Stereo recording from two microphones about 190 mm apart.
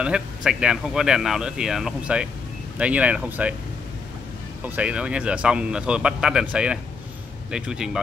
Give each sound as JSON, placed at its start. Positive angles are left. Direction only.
{"t": 0.0, "sound": "speech", "side_deg": -5}
{"t": 4.6, "sound": "speech", "side_deg": -5}